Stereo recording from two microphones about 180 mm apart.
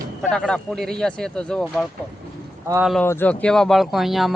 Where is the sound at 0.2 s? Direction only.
5° left (ahead or behind).